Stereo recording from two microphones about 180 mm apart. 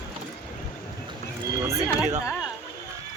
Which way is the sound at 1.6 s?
15° right (ahead or behind).